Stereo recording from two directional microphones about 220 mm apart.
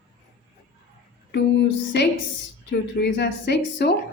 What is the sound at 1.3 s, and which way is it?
A woman's voice, 50° left (ahead or behind).